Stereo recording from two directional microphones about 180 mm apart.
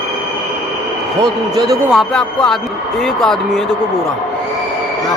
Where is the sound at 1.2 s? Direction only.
20° right (ahead or behind).